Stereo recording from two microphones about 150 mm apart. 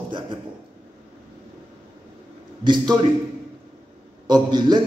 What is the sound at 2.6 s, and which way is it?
Speech, 30° right (ahead or behind).